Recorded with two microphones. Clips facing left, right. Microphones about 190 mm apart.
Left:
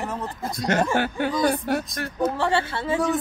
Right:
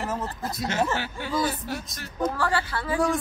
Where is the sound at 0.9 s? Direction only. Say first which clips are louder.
Left 5 dB; 55° left (ahead or behind).